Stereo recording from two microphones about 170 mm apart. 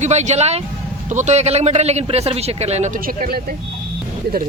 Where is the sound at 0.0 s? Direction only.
40° right (ahead or behind); by 3.4 s 60° right (ahead or behind).